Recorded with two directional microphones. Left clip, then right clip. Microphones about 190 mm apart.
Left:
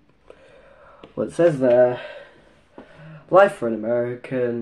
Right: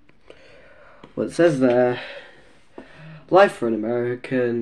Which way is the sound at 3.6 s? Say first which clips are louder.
Left 1 dB; 5° right (ahead or behind).